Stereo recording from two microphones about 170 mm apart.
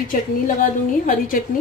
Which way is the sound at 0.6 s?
55° left (ahead or behind).